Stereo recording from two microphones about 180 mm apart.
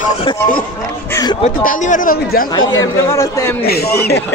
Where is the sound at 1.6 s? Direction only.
45° left (ahead or behind).